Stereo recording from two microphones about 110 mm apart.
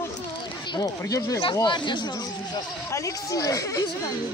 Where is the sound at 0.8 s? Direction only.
30° left (ahead or behind).